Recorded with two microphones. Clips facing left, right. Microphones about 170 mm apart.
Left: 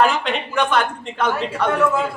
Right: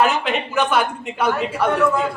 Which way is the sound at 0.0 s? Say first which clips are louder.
Even; 5° right (ahead or behind).